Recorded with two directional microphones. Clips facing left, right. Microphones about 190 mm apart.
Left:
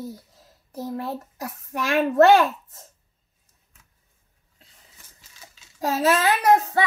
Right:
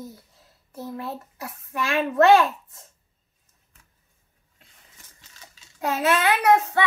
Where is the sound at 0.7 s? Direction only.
35° left (ahead or behind).